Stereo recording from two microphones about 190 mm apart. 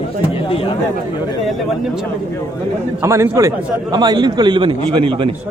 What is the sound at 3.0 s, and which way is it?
A man's voice, 15° right (ahead or behind).